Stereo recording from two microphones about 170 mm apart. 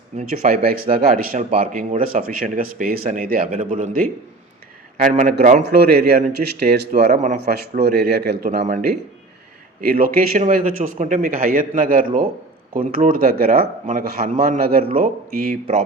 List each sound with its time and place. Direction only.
0.2 s a man's voice: 55° right (ahead or behind)
5.8 s a man's voice: 65° right (ahead or behind)
7.1 s speech: 45° right (ahead or behind)
7.4 s speech: 65° right (ahead or behind)
9.8 s a man's voice: 60° right (ahead or behind)